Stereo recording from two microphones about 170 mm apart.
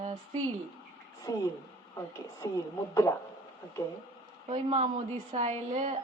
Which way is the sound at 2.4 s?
20° left (ahead or behind).